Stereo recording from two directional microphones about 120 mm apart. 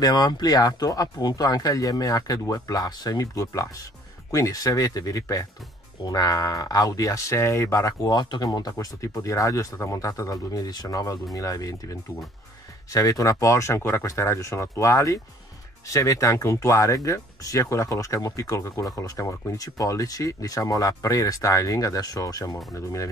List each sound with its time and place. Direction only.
0.0 s speech: 35° left (ahead or behind)